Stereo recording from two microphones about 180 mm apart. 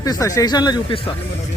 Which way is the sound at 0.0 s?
20° left (ahead or behind).